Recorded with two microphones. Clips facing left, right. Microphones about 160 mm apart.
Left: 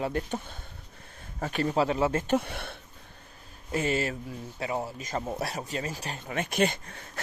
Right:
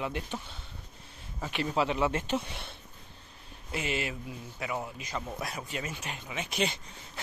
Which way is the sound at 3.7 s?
40° left (ahead or behind).